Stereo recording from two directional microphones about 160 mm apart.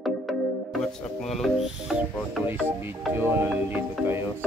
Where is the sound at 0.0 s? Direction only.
Centre (ahead or behind).